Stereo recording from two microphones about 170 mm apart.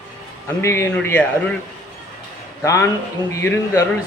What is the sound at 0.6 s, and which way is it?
Speech, 15° left (ahead or behind).